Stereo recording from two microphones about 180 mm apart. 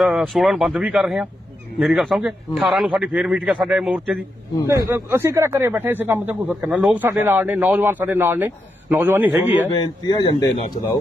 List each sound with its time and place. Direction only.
0.0 s a man's voice: centre (ahead or behind)
9.7 s speech: 25° left (ahead or behind)